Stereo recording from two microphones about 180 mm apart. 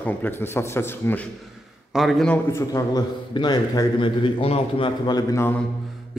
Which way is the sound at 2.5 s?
20° left (ahead or behind).